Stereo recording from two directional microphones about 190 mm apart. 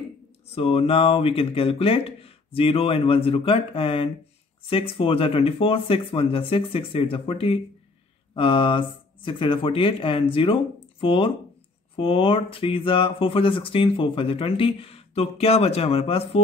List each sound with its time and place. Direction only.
0.6 s speech: 30° left (ahead or behind)